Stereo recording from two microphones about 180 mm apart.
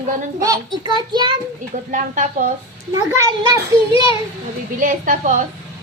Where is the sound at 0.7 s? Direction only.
25° right (ahead or behind).